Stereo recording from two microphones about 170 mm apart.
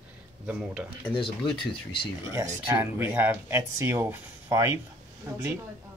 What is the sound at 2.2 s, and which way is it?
Speech, 15° right (ahead or behind).